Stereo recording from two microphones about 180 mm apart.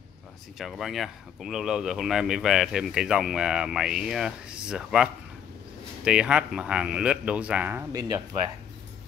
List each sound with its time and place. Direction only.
0.6 s speech: centre (ahead or behind)
7.9 s speech: 20° right (ahead or behind)